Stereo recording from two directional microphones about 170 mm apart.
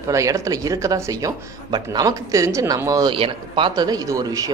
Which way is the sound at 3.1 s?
30° right (ahead or behind).